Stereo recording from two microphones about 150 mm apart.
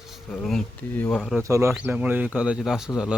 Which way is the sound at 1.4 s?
20° right (ahead or behind).